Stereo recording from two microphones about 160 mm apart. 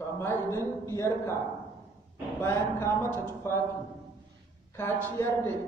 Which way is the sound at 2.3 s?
15° left (ahead or behind).